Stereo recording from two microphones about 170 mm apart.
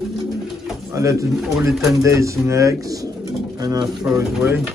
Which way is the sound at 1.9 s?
20° right (ahead or behind).